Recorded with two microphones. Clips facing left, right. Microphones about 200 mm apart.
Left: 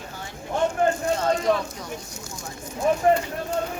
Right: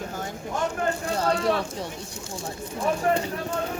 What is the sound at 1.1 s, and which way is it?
Speech, 35° right (ahead or behind).